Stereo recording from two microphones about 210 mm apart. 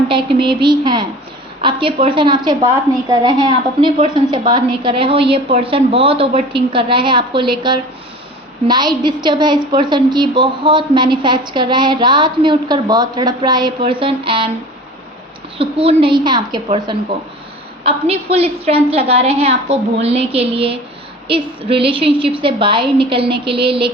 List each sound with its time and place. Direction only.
0.1 s a woman's voice: 25° right (ahead or behind)
15.5 s a woman's voice: 25° right (ahead or behind)